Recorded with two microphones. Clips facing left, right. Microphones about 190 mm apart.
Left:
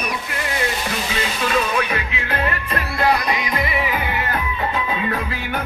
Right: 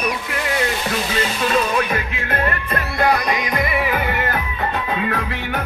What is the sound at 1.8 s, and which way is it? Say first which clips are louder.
Music: right 2 dB; 45° right (ahead or behind).